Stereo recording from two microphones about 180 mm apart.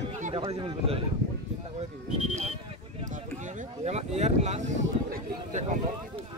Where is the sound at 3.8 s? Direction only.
35° right (ahead or behind).